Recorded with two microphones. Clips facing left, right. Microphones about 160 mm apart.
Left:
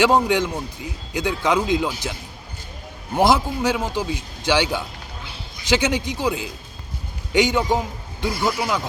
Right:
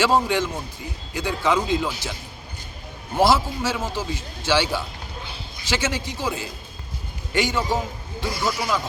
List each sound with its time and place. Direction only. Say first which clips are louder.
0.0 s a man's voice: left 3 dB; 15° left (ahead or behind)
3.2 s a man's voice: left 1 dB; 15° left (ahead or behind)